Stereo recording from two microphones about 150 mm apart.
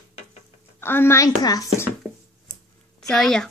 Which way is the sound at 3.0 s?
5° left (ahead or behind).